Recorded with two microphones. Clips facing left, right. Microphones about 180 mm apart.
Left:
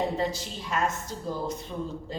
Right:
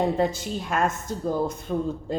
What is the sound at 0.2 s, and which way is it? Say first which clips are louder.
Speech: right 5 dB; 50° right (ahead or behind).